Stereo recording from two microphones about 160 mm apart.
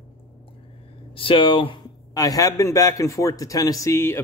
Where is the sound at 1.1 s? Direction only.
35° left (ahead or behind).